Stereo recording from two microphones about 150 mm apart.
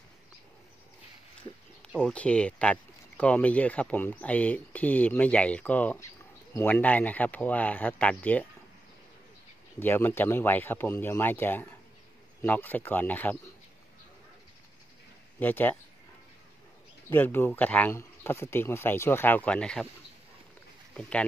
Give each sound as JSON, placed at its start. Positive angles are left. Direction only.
{"t": 2.0, "sound": "speech", "side_deg": 5}
{"t": 9.8, "sound": "speech", "side_deg": 15}
{"t": 15.3, "sound": "speech", "side_deg": 10}
{"t": 17.1, "sound": "speech", "side_deg": 15}